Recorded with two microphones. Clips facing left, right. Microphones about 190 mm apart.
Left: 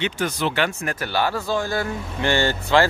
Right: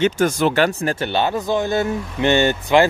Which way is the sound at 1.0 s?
25° right (ahead or behind).